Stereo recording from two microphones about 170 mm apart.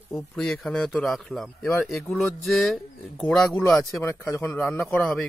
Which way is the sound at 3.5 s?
10° left (ahead or behind).